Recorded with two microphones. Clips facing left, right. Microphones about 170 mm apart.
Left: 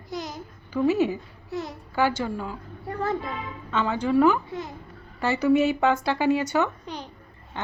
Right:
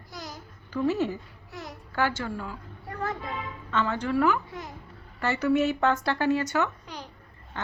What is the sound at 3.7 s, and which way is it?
Speech, 10° left (ahead or behind).